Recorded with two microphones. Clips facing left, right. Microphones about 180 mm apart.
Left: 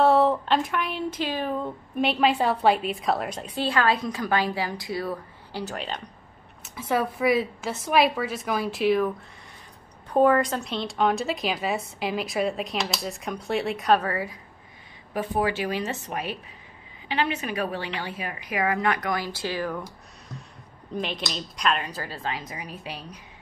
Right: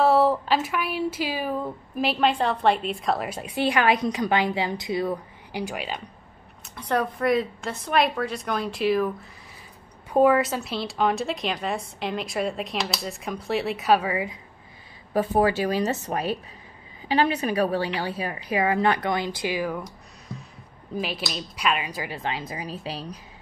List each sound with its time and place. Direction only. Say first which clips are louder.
0.0 s a woman's voice: even; centre (ahead or behind)
3.5 s a woman's voice: right 2 dB; 15° right (ahead or behind)
6.6 s a woman's voice: even; 5° left (ahead or behind)
10.1 s a woman's voice: right 1 dB; 5° right (ahead or behind)
15.1 s a woman's voice: right 4 dB; 40° right (ahead or behind); by 19.8 s 10° right (ahead or behind)
20.9 s speech: right 1 dB; 5° right (ahead or behind); by 22.4 s 20° right (ahead or behind)
22.5 s a woman's voice: right 4 dB; 30° right (ahead or behind)